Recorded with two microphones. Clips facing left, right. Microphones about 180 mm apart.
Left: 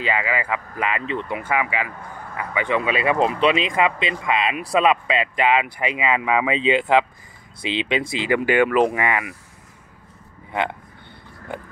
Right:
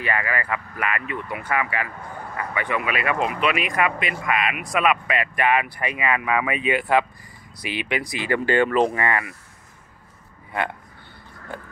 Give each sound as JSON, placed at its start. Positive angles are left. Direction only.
{"t": 0.0, "sound": "speech", "side_deg": 15}